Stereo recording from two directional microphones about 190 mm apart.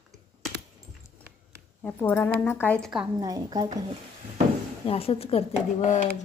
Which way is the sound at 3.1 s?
20° right (ahead or behind).